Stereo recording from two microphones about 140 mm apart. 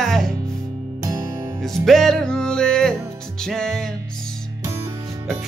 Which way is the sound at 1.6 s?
Centre (ahead or behind).